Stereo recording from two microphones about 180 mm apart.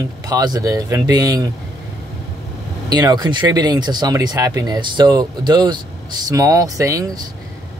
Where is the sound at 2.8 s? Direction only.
25° right (ahead or behind).